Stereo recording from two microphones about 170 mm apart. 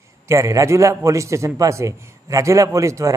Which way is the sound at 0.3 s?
20° right (ahead or behind).